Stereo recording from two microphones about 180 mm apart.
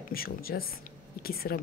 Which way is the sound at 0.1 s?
55° left (ahead or behind).